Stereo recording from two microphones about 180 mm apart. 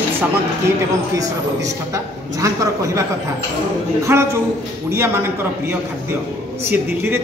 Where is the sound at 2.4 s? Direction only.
15° right (ahead or behind).